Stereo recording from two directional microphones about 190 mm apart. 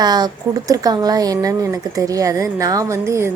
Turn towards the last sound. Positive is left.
turn(degrees=-15)  # may be behind; listen again after turning